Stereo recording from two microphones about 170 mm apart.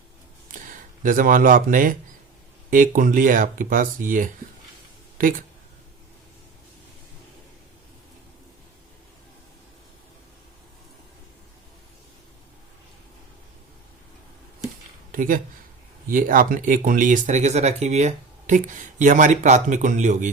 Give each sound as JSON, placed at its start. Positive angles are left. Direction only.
{"t": 1.0, "sound": "speech", "side_deg": -50}
{"t": 15.1, "sound": "speech", "side_deg": -55}